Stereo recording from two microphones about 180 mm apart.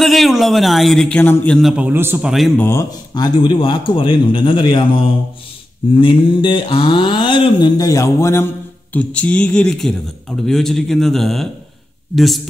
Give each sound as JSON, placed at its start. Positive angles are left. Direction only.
{"t": 0.0, "sound": "speech", "side_deg": 0}
{"t": 2.3, "sound": "speech", "side_deg": 0}
{"t": 2.6, "sound": "mantra", "side_deg": 15}
{"t": 8.9, "sound": "speech", "side_deg": 5}